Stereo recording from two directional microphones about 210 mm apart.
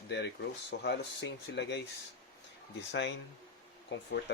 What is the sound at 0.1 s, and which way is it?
Speech, 55° left (ahead or behind).